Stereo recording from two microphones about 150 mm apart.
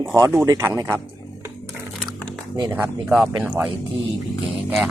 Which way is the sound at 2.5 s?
25° right (ahead or behind).